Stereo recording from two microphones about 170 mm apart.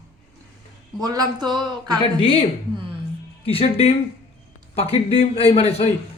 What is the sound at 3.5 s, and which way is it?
Speech, 35° left (ahead or behind).